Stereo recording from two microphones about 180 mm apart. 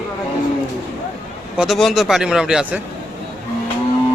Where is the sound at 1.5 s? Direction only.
Centre (ahead or behind).